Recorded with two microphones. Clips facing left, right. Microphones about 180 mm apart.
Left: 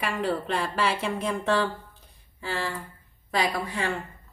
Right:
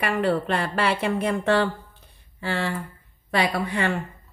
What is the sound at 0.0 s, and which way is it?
A woman's voice, 65° right (ahead or behind).